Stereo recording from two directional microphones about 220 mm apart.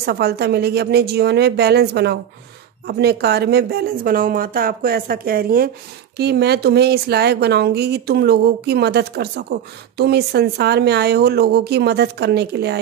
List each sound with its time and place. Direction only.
0.0 s speech: 45° right (ahead or behind)